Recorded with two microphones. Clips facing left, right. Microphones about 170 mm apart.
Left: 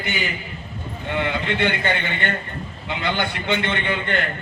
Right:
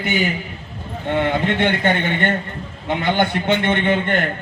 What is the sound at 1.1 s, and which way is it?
A man's voice, 50° right (ahead or behind).